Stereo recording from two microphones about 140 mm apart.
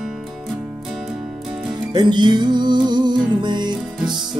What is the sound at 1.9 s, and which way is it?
Music, 30° right (ahead or behind).